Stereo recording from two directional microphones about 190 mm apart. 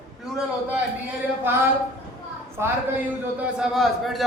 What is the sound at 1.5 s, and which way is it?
A man's voice, 10° right (ahead or behind).